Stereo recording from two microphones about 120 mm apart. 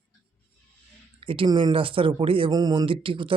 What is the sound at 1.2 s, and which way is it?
Speech, 45° right (ahead or behind).